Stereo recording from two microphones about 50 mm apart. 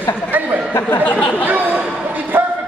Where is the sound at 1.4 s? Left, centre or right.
Right.